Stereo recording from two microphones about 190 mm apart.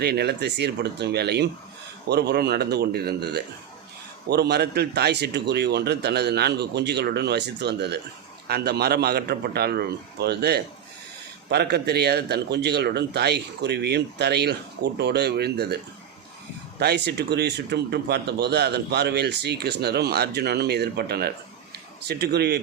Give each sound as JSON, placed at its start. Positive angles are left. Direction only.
{"t": 0.0, "sound": "speech", "side_deg": -60}
{"t": 16.8, "sound": "speech", "side_deg": -60}